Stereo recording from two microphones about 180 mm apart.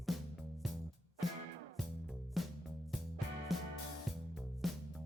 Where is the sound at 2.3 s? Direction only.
Centre (ahead or behind).